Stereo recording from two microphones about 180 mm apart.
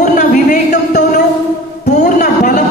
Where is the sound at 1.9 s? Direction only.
40° left (ahead or behind).